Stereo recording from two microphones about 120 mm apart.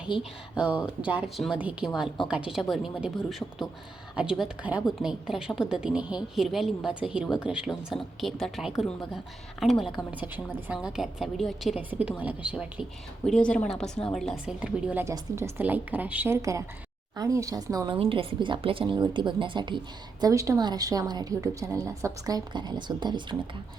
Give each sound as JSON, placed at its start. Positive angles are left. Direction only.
{"t": 0.2, "sound": "a woman's voice", "side_deg": -10}
{"t": 10.1, "sound": "speech", "side_deg": -15}
{"t": 10.8, "sound": "a woman's voice", "side_deg": -5}
{"t": 11.8, "sound": "speech", "side_deg": -15}
{"t": 13.2, "sound": "a woman's voice", "side_deg": 5}
{"t": 14.4, "sound": "speech", "side_deg": -10}
{"t": 15.0, "sound": "a woman's voice", "side_deg": -25}
{"t": 17.8, "sound": "a woman's voice", "side_deg": -45}
{"t": 20.2, "sound": "a woman's voice", "side_deg": -25}